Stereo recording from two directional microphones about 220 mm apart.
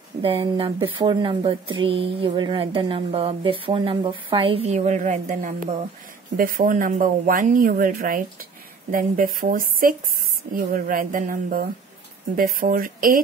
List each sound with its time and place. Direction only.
0.2 s speech: 25° right (ahead or behind); by 13.2 s 40° right (ahead or behind)